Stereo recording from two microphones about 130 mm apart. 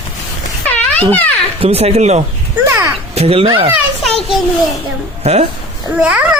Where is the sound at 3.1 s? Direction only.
50° right (ahead or behind).